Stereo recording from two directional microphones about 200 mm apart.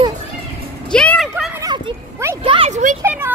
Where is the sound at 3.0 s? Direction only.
10° right (ahead or behind).